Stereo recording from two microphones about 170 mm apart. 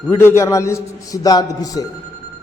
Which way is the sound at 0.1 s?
15° left (ahead or behind).